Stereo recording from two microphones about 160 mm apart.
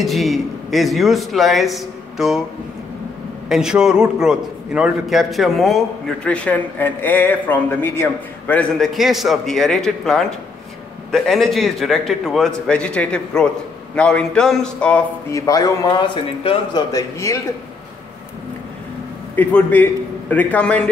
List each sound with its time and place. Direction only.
0.0 s a man's voice: centre (ahead or behind)
3.4 s a man's voice: 5° right (ahead or behind)
15.3 s a man's voice: 20° left (ahead or behind)
19.3 s a man's voice: 10° left (ahead or behind)